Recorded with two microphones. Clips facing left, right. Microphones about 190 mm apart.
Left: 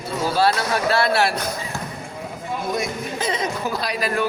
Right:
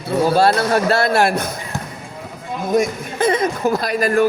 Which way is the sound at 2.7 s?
55° right (ahead or behind).